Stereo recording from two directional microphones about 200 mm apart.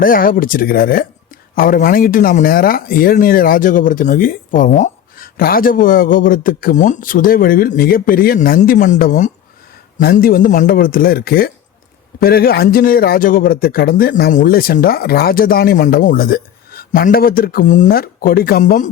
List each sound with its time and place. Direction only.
0.0 s speech: 45° left (ahead or behind)